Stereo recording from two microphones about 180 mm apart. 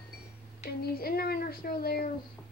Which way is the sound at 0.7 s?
55° left (ahead or behind).